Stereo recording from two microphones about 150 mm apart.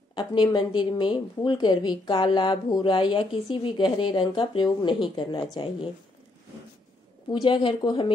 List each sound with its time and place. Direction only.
0.1 s a woman's voice: 30° left (ahead or behind)
7.2 s a woman's voice: 30° left (ahead or behind)